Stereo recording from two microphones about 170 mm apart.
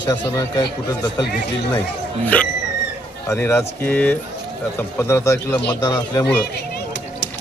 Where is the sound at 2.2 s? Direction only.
10° left (ahead or behind).